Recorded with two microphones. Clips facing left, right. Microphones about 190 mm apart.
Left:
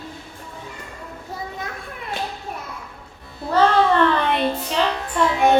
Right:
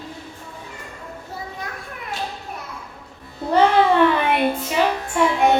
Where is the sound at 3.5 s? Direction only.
15° right (ahead or behind).